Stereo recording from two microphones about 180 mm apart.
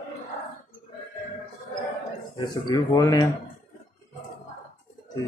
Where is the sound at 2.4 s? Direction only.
20° left (ahead or behind).